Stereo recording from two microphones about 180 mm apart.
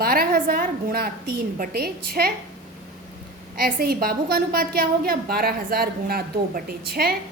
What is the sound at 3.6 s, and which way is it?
A woman's voice, 55° right (ahead or behind).